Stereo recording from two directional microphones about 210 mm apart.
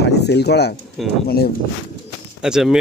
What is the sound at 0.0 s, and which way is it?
Speech, 55° left (ahead or behind).